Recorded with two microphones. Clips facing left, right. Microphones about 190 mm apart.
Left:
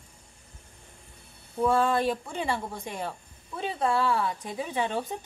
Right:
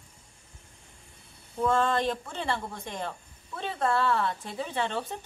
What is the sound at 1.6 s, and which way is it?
Speech, 10° left (ahead or behind).